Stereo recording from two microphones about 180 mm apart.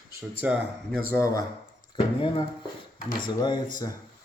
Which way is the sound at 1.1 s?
15° left (ahead or behind).